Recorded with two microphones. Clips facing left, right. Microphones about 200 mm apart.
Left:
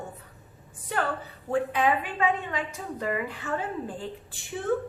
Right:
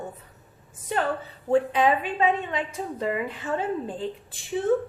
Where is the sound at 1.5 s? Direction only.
25° right (ahead or behind).